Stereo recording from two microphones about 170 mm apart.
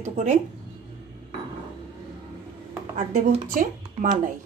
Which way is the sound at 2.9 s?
50° right (ahead or behind).